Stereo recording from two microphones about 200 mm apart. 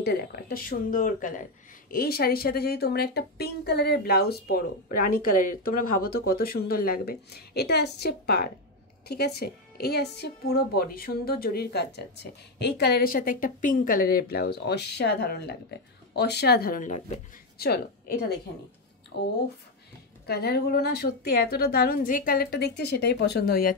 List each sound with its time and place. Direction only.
0.0 s a woman's voice: 50° left (ahead or behind)
17.6 s a woman's voice: 50° left (ahead or behind)
20.2 s a woman's voice: 55° left (ahead or behind)